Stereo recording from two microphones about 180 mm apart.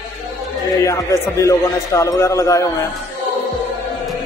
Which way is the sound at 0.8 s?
15° left (ahead or behind).